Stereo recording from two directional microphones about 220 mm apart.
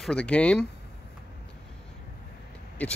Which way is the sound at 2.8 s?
5° left (ahead or behind).